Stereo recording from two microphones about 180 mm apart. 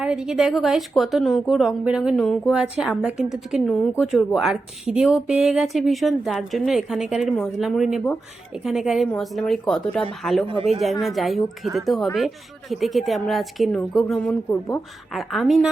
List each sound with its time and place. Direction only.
0.0 s a woman's voice: 5° right (ahead or behind)
10.4 s speech: 30° right (ahead or behind)
11.0 s a woman's voice: centre (ahead or behind)